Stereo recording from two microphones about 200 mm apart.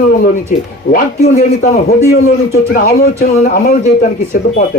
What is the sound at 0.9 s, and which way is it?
A man's voice, 40° left (ahead or behind).